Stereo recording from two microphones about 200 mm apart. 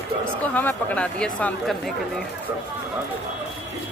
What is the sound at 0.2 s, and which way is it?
Speech, 10° left (ahead or behind).